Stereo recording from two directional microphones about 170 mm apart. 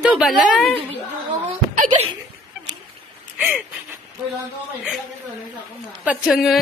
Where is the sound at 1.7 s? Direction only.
45° right (ahead or behind).